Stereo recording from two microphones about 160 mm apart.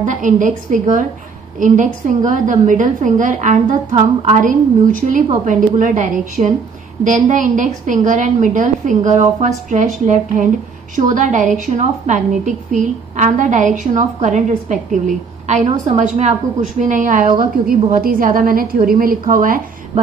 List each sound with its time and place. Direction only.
0.0 s a woman's voice: 55° right (ahead or behind)